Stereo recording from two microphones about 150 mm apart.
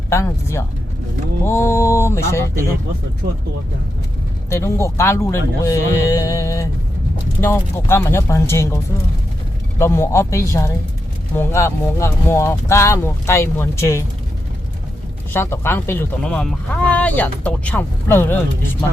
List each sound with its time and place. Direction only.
0.1 s speech: 20° left (ahead or behind)
4.4 s speech: 20° left (ahead or behind)
7.9 s speech: 15° left (ahead or behind)
15.3 s speech: 15° left (ahead or behind)